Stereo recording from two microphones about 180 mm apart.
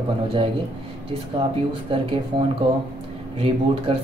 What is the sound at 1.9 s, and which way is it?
Speech, 30° right (ahead or behind).